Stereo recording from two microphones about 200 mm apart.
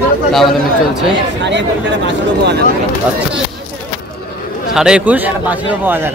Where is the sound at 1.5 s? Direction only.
60° right (ahead or behind).